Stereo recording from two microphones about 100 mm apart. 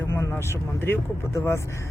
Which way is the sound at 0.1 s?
30° left (ahead or behind).